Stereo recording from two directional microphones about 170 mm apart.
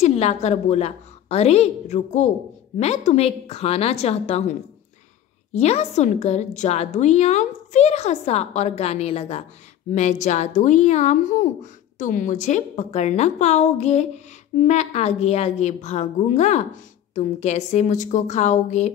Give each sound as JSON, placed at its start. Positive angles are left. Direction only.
{"t": 0.0, "sound": "a woman's voice", "side_deg": 40}